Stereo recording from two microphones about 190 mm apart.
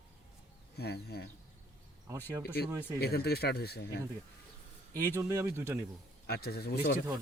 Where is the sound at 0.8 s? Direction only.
55° left (ahead or behind).